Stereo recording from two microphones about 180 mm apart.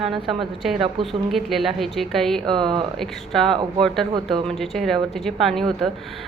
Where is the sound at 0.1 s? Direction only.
Centre (ahead or behind).